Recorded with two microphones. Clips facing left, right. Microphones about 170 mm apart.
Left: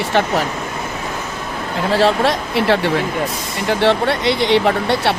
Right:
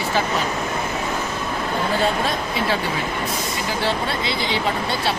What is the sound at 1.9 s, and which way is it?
Speech, 90° left.